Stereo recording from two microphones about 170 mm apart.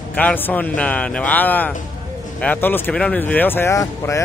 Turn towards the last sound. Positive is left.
turn(degrees=20)  # may be behind; listen again after turning